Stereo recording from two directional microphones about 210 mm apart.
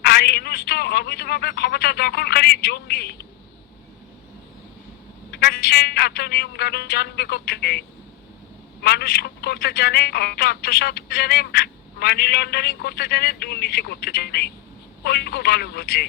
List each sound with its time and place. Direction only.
0.0 s speech: 50° left (ahead or behind)
5.3 s speech: 50° left (ahead or behind)